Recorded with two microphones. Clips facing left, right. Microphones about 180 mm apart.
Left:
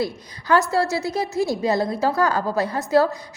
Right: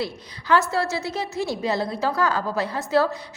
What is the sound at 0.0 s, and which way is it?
A woman's voice, 40° left (ahead or behind).